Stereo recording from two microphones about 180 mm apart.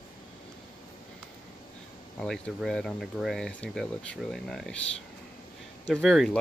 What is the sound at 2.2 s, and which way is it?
Speech, centre (ahead or behind).